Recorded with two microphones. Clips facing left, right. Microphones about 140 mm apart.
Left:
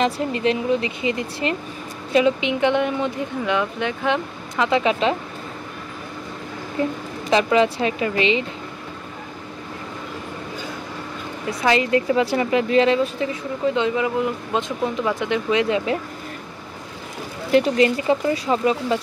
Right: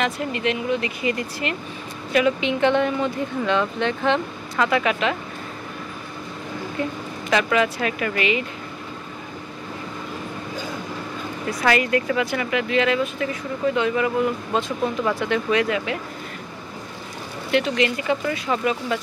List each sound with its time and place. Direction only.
0.0 s speech: 30° left (ahead or behind); by 4.6 s 10° left (ahead or behind)
4.6 s speech: 25° left (ahead or behind)
6.8 s speech: 35° left (ahead or behind)
11.6 s speech: 25° left (ahead or behind)
17.5 s speech: 35° left (ahead or behind)